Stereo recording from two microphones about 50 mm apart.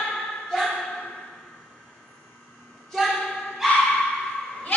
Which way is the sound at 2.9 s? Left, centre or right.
Centre.